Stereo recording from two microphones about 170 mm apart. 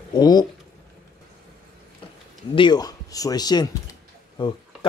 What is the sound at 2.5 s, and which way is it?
Speech, 25° left (ahead or behind).